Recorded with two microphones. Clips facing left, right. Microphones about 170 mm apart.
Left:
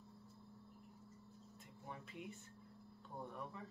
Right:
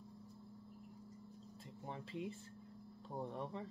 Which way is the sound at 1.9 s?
30° right (ahead or behind).